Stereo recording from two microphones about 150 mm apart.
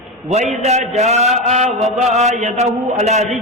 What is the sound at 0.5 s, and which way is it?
A man's voice, 45° right (ahead or behind).